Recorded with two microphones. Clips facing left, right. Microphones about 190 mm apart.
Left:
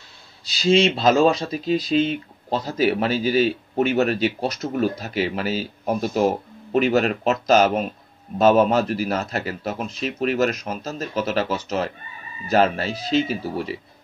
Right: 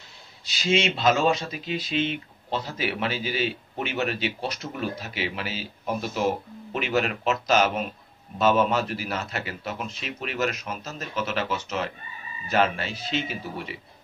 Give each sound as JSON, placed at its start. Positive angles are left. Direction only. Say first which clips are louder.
{"t": 0.5, "sound": "speech", "louder": "left 7 dB", "side_deg": 35}